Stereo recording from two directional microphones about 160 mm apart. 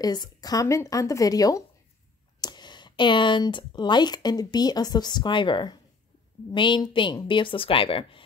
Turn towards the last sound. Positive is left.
turn(degrees=35)  # may be behind; listen again after turning